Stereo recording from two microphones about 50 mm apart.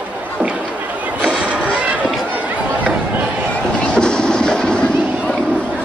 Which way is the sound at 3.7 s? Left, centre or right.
Centre.